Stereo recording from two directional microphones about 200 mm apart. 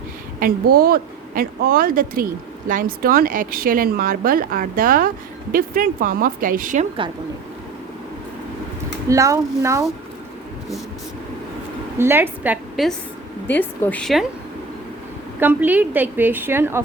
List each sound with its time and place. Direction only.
0.3 s a woman's voice: 45° right (ahead or behind)
9.0 s a woman's voice: 15° right (ahead or behind)
11.9 s a woman's voice: 10° right (ahead or behind)
13.5 s a woman's voice: 10° left (ahead or behind)
15.4 s a woman's voice: 10° right (ahead or behind)